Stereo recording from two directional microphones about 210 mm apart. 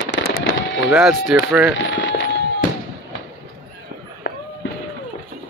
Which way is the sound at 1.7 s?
60° left (ahead or behind).